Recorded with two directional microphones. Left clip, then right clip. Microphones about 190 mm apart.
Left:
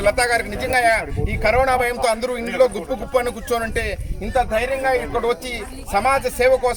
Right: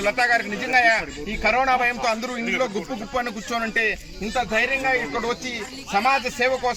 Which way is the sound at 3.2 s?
30° left (ahead or behind).